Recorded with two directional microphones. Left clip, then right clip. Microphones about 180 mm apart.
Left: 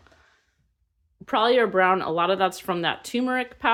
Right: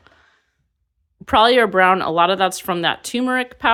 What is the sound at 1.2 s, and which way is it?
Speech, 40° right (ahead or behind).